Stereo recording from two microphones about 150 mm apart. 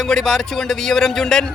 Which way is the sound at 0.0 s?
5° left (ahead or behind).